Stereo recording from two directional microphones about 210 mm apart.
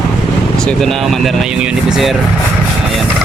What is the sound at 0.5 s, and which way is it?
Speech, centre (ahead or behind).